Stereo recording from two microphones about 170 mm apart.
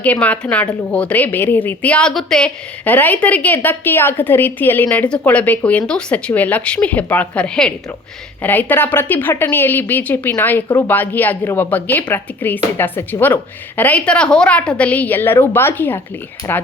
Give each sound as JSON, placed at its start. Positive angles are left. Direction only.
{"t": 0.0, "sound": "a woman's voice", "side_deg": 10}